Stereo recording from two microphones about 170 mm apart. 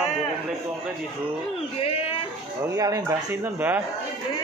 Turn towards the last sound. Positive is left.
turn(degrees=-15)  # may be behind; listen again after turning